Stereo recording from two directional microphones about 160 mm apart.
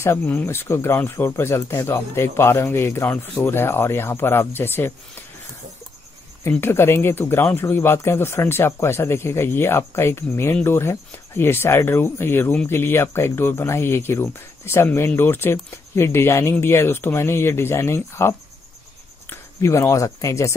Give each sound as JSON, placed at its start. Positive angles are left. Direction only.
{"t": 0.0, "sound": "speech", "side_deg": 15}
{"t": 6.4, "sound": "speech", "side_deg": 15}